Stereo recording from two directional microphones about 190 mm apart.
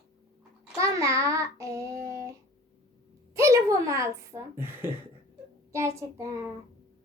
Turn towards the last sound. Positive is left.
turn(degrees=-15)  # may be behind; listen again after turning